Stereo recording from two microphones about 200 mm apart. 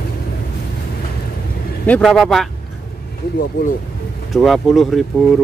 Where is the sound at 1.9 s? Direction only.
Centre (ahead or behind).